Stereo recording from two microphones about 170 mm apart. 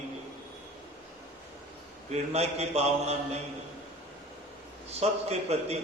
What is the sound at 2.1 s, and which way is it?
A man's voice, 40° right (ahead or behind).